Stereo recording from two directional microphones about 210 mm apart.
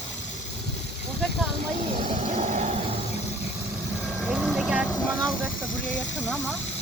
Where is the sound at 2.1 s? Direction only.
30° right (ahead or behind).